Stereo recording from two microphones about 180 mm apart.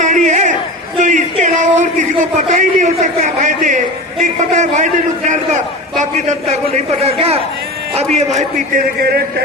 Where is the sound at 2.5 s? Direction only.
40° right (ahead or behind).